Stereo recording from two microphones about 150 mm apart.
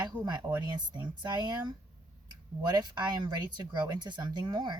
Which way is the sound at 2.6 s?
30° right (ahead or behind).